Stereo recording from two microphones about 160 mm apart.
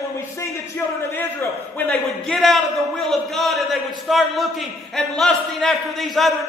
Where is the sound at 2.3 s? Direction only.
Centre (ahead or behind).